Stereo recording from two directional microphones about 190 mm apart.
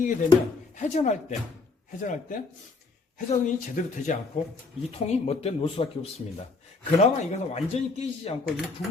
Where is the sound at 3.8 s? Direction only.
45° left (ahead or behind).